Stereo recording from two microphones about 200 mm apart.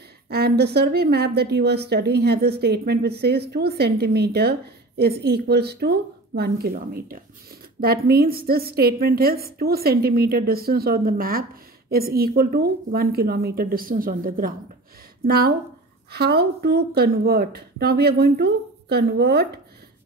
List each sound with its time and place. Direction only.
0.3 s speech: 55° right (ahead or behind)